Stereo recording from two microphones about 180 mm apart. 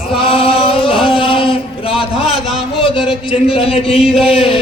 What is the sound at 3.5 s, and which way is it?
Speech, 35° left (ahead or behind).